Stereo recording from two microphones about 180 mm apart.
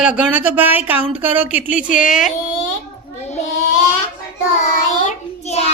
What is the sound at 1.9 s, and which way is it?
Speech, 50° left (ahead or behind).